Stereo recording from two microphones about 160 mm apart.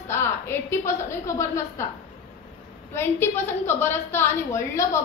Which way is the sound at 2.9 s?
15° left (ahead or behind).